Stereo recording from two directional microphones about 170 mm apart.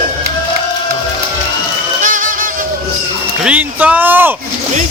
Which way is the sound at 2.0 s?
50° right (ahead or behind).